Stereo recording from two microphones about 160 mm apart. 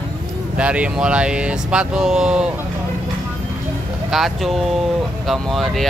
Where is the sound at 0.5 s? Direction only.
5° right (ahead or behind).